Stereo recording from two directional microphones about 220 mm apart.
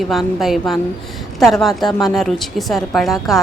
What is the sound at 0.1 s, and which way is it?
A woman's voice, centre (ahead or behind).